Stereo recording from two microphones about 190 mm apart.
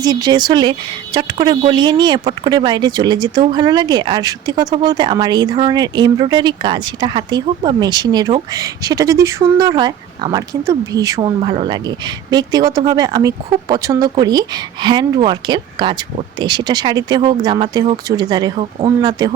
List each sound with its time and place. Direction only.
0.0 s speech: 20° right (ahead or behind)